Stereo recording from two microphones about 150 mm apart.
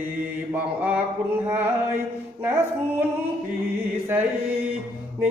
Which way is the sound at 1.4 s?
15° right (ahead or behind).